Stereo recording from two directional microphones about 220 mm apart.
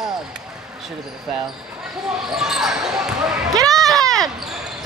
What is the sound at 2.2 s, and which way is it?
Speech, centre (ahead or behind).